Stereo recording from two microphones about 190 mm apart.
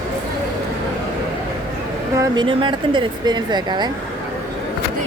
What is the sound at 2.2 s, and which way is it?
Speech, 25° right (ahead or behind).